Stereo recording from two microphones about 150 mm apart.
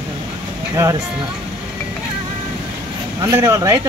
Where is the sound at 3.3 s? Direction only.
20° right (ahead or behind).